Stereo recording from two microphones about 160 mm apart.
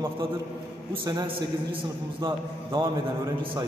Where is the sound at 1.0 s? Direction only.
25° right (ahead or behind).